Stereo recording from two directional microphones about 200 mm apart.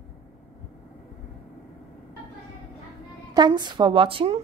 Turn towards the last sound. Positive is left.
turn(degrees=-25)  # may be behind; listen again after turning